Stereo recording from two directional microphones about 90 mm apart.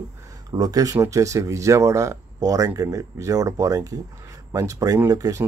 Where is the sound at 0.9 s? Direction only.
35° right (ahead or behind).